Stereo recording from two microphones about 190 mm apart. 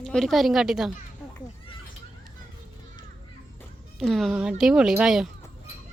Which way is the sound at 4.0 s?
Centre (ahead or behind).